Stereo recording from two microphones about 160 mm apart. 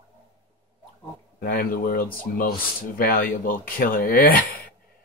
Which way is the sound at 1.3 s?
65° left (ahead or behind).